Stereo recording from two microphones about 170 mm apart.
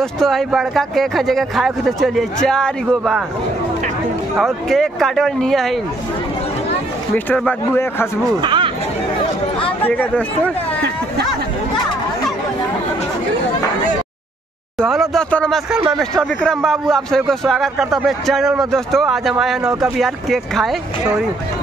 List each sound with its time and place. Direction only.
0.0 s a man's voice: centre (ahead or behind)
4.4 s a man's voice: centre (ahead or behind)
7.2 s a man's voice: 10° left (ahead or behind)
8.3 s a sound: 30° right (ahead or behind)
9.8 s a man's voice: 10° left (ahead or behind)
14.8 s a man's voice: centre (ahead or behind)